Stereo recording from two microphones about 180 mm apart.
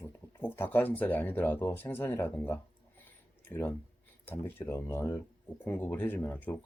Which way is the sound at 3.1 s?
10° left (ahead or behind).